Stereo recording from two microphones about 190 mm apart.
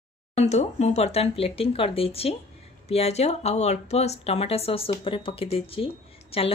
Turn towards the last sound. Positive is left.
turn(degrees=30)  # may be behind; listen again after turning